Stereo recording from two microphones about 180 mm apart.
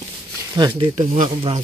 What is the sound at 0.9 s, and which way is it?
Speech, 45° right (ahead or behind).